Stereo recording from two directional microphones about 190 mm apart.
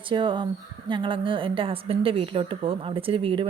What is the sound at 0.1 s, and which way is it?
A woman's voice, 25° right (ahead or behind).